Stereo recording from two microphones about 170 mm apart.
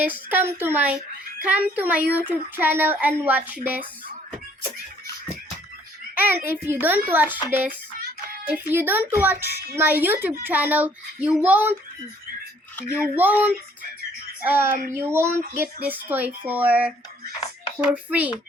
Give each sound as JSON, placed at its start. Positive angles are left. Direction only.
{"t": 0.0, "sound": "a child's voice", "side_deg": -10}
{"t": 6.1, "sound": "a child's voice", "side_deg": -10}
{"t": 13.0, "sound": "a child's voice", "side_deg": -10}
{"t": 14.4, "sound": "a child's voice", "side_deg": -10}
{"t": 17.4, "sound": "dishes", "side_deg": 35}
{"t": 17.9, "sound": "a child's voice", "side_deg": -10}